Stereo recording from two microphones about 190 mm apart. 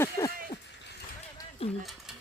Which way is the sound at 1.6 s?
30° left (ahead or behind).